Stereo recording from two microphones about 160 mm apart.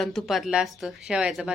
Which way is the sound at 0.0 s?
Centre (ahead or behind).